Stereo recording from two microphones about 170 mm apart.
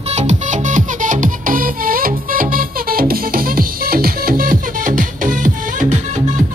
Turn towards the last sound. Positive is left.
turn(degrees=-50)  # may be behind; listen again after turning